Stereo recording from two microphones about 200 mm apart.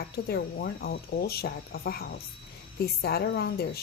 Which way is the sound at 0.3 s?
50° left (ahead or behind).